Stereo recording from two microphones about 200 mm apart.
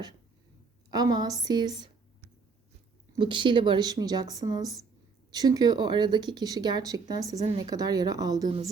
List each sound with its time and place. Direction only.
0.9 s speech: 20° right (ahead or behind)
3.2 s speech: 25° right (ahead or behind)
7.3 s a woman's voice: 35° right (ahead or behind)
7.6 s speech: 20° right (ahead or behind)